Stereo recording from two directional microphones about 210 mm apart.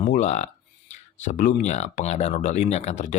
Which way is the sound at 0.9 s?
35° left (ahead or behind).